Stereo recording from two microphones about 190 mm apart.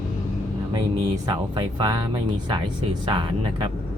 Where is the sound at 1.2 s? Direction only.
25° right (ahead or behind).